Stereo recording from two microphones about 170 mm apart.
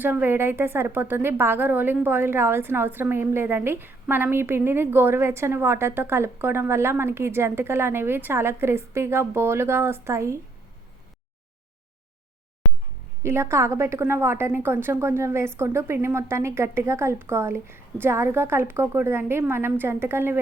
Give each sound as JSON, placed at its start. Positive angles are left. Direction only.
{"t": 0.0, "sound": "a woman's voice", "side_deg": -10}
{"t": 13.2, "sound": "a woman's voice", "side_deg": -15}